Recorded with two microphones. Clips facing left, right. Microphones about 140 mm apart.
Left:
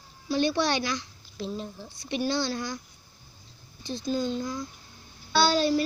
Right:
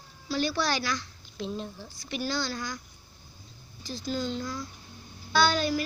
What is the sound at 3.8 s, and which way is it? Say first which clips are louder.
Speech: left 3 dB; 25° left (ahead or behind).